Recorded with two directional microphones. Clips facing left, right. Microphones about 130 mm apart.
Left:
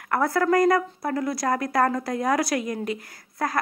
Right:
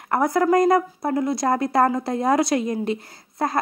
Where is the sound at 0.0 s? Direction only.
20° right (ahead or behind).